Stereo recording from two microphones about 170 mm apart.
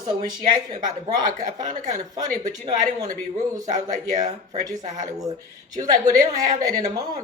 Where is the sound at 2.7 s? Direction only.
20° right (ahead or behind).